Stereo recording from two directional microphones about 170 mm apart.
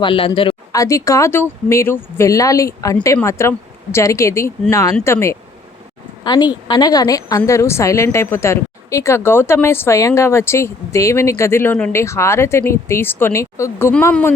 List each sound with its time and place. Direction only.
0.0 s a woman's voice: 30° left (ahead or behind); by 14.3 s 10° left (ahead or behind)